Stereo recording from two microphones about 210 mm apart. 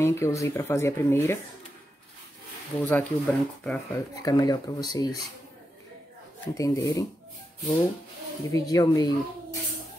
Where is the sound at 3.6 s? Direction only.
5° left (ahead or behind).